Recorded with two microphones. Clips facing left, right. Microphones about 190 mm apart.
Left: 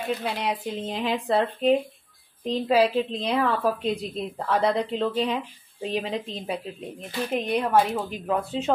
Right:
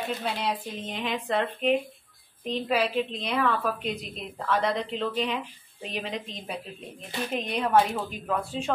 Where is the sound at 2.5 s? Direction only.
30° left (ahead or behind).